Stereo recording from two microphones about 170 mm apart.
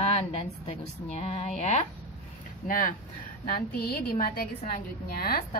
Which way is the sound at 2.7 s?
55° left (ahead or behind).